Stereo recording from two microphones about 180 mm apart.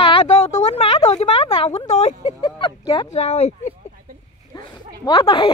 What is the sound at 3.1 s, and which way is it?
Speech, 35° left (ahead or behind).